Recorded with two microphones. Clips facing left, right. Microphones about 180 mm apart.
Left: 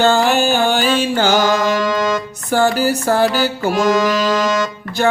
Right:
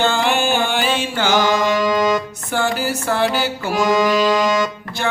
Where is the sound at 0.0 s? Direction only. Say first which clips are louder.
Left 4 dB; 40° left (ahead or behind).